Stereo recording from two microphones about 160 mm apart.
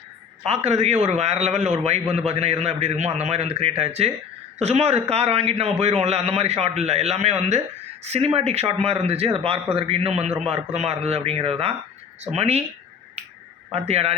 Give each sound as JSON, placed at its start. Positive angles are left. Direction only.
{"t": 0.4, "sound": "a man's voice", "side_deg": -40}
{"t": 13.7, "sound": "a man's voice", "side_deg": -40}